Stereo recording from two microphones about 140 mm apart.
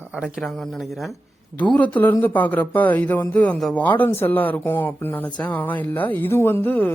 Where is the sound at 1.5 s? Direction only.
10° left (ahead or behind).